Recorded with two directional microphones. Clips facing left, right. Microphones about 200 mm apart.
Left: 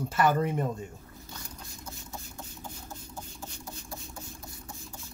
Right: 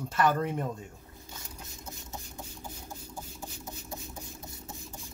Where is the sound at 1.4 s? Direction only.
20° right (ahead or behind).